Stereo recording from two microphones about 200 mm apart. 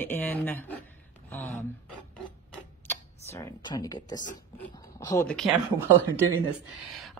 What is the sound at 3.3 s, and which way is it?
Speech, 20° left (ahead or behind).